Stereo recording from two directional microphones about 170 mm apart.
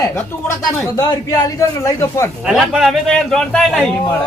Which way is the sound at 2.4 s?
5° right (ahead or behind).